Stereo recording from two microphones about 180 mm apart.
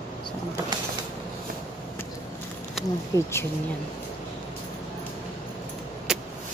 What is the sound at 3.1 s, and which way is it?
Speech, 15° left (ahead or behind).